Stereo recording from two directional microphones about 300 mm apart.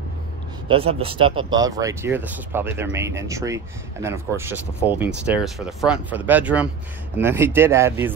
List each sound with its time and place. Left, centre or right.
0.7 s speech: centre